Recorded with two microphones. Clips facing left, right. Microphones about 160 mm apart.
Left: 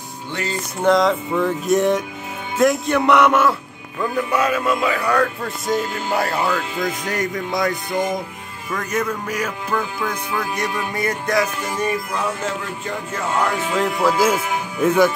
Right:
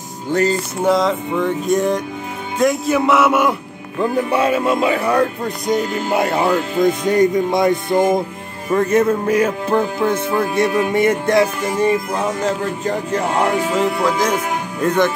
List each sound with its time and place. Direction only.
0.3 s music: 40° right (ahead or behind)
0.8 s music: centre (ahead or behind)
4.0 s speech: 30° right (ahead or behind)
7.9 s music: 50° right (ahead or behind)
8.6 s speech: 30° right (ahead or behind)
13.7 s speech: 5° left (ahead or behind)